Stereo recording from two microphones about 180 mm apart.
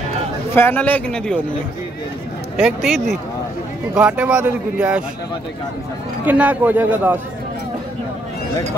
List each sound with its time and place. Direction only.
0.6 s a man's voice: 10° left (ahead or behind)
2.5 s a man's voice: centre (ahead or behind)
6.2 s a man's voice: 10° right (ahead or behind)